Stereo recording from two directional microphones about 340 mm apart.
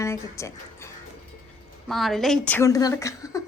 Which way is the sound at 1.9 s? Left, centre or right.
Centre.